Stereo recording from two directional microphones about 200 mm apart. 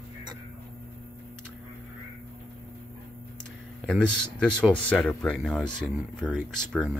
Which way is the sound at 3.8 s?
5° left (ahead or behind).